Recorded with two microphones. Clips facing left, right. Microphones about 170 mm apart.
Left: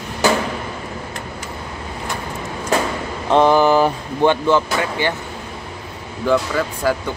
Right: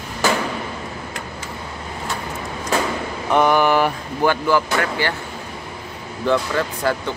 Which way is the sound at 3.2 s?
30° left (ahead or behind).